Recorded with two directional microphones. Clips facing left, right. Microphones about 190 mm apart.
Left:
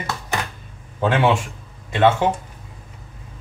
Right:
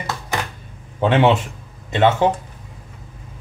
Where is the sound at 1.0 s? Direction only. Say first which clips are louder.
Right 3 dB; 20° right (ahead or behind).